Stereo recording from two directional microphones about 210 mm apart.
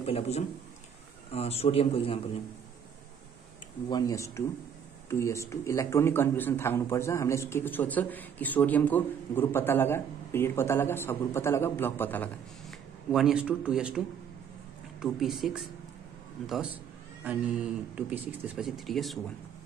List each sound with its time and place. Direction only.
0.0 s a man's voice: 30° left (ahead or behind)
3.9 s a man's voice: 15° left (ahead or behind); by 16.7 s centre (ahead or behind)
17.9 s speech: 5° right (ahead or behind)